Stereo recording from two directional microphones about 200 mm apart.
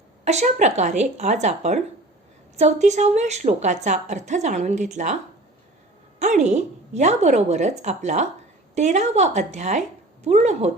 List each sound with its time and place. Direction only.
0.3 s a woman's voice: 35° right (ahead or behind)
2.8 s a woman's voice: 35° right (ahead or behind)
6.1 s a woman's voice: 35° right (ahead or behind)